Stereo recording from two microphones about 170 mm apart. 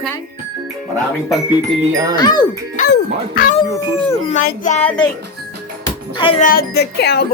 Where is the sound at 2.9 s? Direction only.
55° left (ahead or behind).